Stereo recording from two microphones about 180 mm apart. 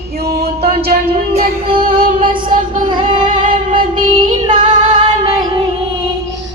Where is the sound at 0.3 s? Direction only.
60° right (ahead or behind).